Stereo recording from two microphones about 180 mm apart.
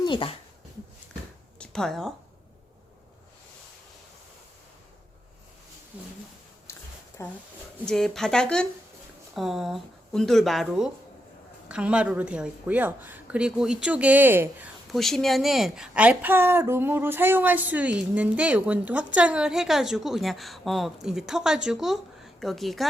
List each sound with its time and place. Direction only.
0.0 s speech: 25° left (ahead or behind)
1.5 s a woman's voice: 5° left (ahead or behind)
5.9 s speech: 5° right (ahead or behind)
6.7 s a sound: 15° left (ahead or behind)
7.2 s speech: 15° left (ahead or behind)
7.9 s a woman's voice: 5° left (ahead or behind)
14.8 s a woman's voice: centre (ahead or behind)